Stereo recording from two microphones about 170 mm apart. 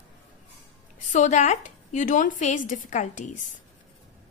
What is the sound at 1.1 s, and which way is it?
A woman's voice, 45° left (ahead or behind).